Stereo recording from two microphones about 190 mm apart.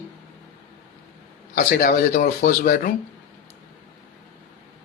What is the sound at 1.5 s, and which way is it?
Speech, 50° left (ahead or behind).